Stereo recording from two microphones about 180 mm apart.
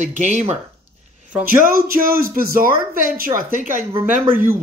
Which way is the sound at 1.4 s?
55° right (ahead or behind).